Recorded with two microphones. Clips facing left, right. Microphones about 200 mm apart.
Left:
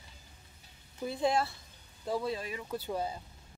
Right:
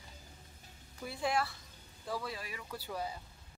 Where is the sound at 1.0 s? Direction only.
25° left (ahead or behind).